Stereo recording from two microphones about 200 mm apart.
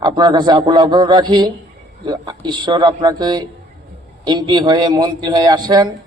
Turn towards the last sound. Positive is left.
turn(degrees=-20)  # may be behind; listen again after turning